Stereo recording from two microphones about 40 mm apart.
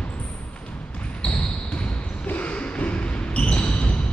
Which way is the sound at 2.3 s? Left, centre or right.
Left.